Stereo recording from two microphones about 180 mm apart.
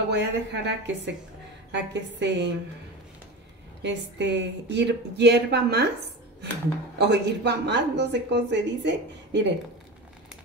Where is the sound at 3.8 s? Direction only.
75° right (ahead or behind).